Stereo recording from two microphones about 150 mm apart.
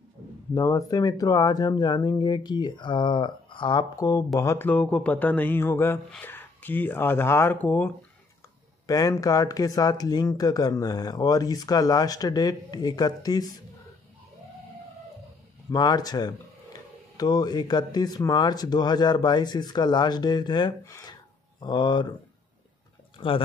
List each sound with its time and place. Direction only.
0.6 s speech: 25° left (ahead or behind)
8.8 s speech: 25° left (ahead or behind)
15.7 s speech: 25° left (ahead or behind)
23.1 s speech: 35° left (ahead or behind)